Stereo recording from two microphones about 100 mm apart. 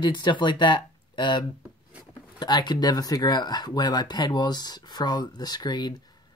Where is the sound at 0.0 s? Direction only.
50° left (ahead or behind).